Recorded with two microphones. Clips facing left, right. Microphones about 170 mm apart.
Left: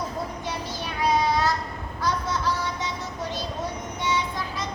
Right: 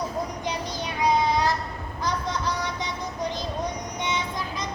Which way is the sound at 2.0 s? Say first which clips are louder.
Left 1 dB; 15° right (ahead or behind).